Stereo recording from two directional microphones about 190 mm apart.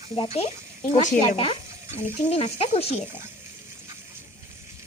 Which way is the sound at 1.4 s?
30° left (ahead or behind).